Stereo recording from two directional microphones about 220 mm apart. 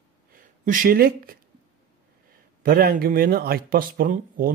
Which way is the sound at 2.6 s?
40° right (ahead or behind).